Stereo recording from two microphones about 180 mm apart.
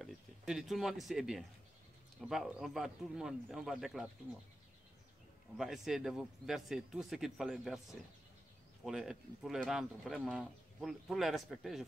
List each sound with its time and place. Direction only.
0.0 s speech: centre (ahead or behind)
5.6 s speech: centre (ahead or behind)
8.8 s speech: centre (ahead or behind)